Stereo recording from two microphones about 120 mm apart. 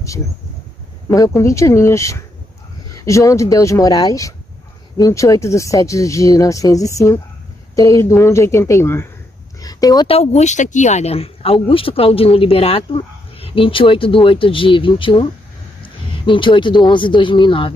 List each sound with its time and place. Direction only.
1.1 s speech: 25° left (ahead or behind)
9.6 s a sound: 30° left (ahead or behind)
10.0 s speech: 60° left (ahead or behind); by 17.7 s 45° left (ahead or behind)